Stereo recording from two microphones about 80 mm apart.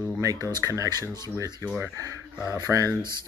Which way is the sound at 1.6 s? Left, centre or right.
Right.